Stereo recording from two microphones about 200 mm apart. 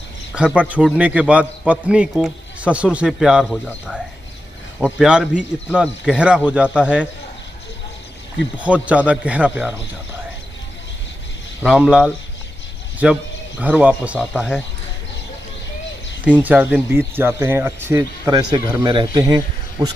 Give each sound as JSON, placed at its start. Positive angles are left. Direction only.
{"t": 0.3, "sound": "a man's voice", "side_deg": -5}
{"t": 8.5, "sound": "speech", "side_deg": -5}
{"t": 11.6, "sound": "a man's voice", "side_deg": -5}
{"t": 16.4, "sound": "speech", "side_deg": -5}